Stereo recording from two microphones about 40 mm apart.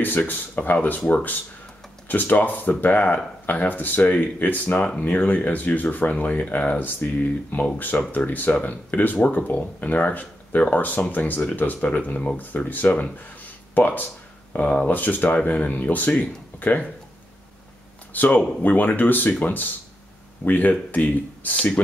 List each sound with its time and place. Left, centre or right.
0.3 s speech: left
13.7 s speech: left
14.5 s speech: left
14.9 s speech: left
15.2 s speech: left
18.1 s speech: left